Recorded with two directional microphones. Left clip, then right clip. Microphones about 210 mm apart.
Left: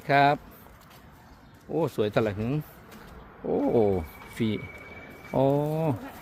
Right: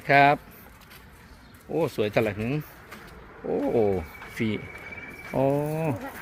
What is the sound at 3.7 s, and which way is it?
Speech, 20° left (ahead or behind).